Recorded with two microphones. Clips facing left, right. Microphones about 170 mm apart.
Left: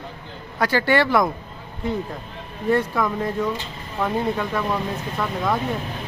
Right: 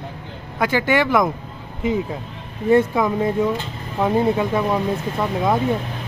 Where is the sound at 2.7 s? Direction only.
20° right (ahead or behind).